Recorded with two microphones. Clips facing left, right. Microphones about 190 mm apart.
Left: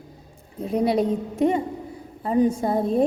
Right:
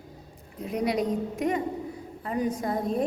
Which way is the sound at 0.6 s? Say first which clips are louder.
Left 6 dB; 30° left (ahead or behind).